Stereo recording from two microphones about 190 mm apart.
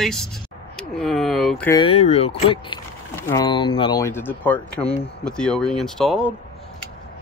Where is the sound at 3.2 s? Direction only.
15° left (ahead or behind); by 6.3 s centre (ahead or behind).